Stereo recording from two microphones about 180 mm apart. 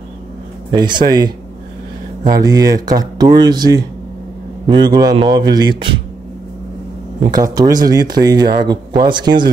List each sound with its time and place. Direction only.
0.7 s speech: 25° right (ahead or behind)
2.3 s speech: 20° right (ahead or behind)
7.2 s speech: 20° right (ahead or behind)